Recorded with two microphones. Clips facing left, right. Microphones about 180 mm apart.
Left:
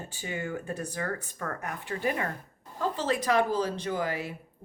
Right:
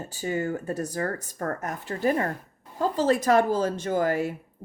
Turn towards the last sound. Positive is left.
turn(degrees=-45)  # may be behind; listen again after turning